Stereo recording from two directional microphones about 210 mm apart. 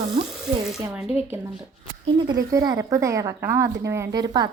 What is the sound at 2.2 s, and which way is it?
A woman's voice, 15° right (ahead or behind).